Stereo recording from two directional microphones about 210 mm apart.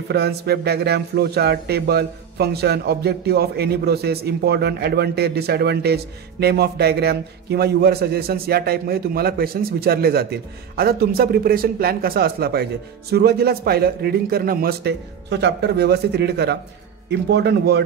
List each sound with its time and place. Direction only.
0.1 s speech: 50° right (ahead or behind)